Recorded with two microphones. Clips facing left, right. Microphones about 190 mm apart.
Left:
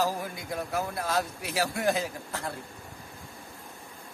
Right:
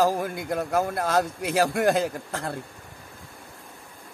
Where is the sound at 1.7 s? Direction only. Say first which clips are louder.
Right 6 dB; 80° right.